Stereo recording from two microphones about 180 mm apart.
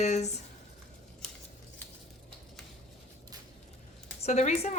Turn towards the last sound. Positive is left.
turn(degrees=40)  # may be behind; listen again after turning